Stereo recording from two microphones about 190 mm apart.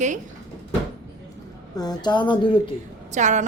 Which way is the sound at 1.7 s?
20° left (ahead or behind).